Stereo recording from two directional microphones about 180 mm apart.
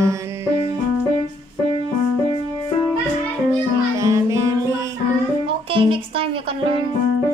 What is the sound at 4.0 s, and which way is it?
Music, 15° right (ahead or behind).